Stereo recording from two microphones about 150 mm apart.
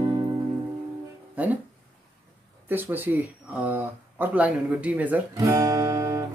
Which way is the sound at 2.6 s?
15° right (ahead or behind).